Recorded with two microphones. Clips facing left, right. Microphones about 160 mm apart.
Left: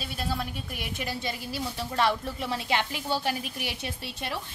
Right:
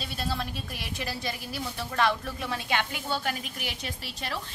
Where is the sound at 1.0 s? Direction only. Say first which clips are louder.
Even; 20° left (ahead or behind).